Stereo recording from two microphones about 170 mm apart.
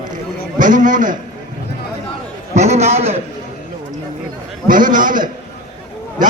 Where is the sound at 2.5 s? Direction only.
40° right (ahead or behind).